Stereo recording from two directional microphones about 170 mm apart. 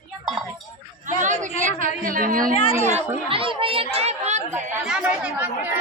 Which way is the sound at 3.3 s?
30° right (ahead or behind).